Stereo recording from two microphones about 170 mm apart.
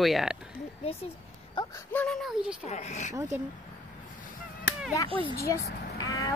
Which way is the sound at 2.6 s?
40° left (ahead or behind).